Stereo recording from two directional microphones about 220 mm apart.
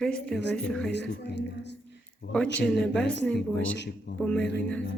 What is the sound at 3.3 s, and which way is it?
Speech, 5° left (ahead or behind).